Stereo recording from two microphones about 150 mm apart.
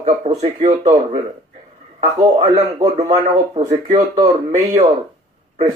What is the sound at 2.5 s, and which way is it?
Speech, 45° right (ahead or behind).